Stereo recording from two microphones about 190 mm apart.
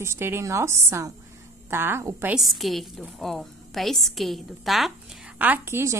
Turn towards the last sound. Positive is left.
turn(degrees=-15)  # may be behind; listen again after turning